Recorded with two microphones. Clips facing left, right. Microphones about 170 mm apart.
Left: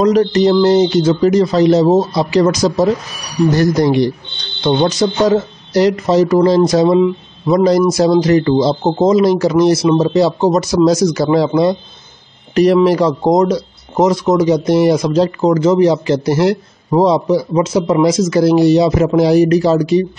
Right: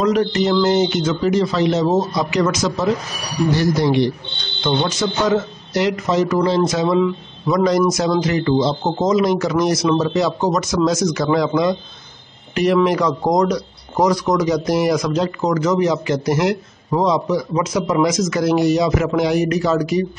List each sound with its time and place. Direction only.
0.0 s speech: 35° left (ahead or behind)
6.9 s speech: 25° left (ahead or behind)